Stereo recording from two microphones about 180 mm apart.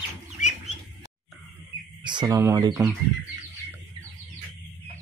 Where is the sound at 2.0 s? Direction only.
25° right (ahead or behind).